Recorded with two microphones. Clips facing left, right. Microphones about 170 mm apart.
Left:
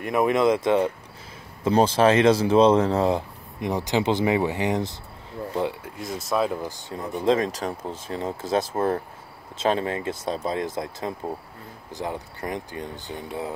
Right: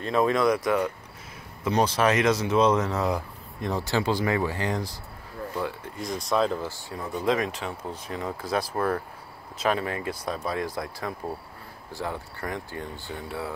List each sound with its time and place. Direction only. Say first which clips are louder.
0.0 s speech: left 2 dB; 15° left (ahead or behind)
5.9 s speech: right 1 dB; 5° left (ahead or behind)
6.9 s speech: left 4 dB; 25° left (ahead or behind)